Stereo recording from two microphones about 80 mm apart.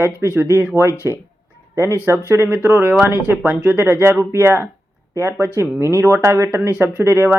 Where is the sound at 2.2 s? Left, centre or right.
Right.